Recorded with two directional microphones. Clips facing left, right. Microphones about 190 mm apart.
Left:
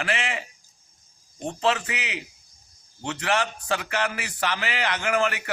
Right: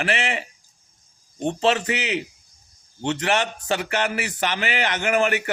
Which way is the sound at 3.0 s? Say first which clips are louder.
Right 3 dB; 25° right (ahead or behind).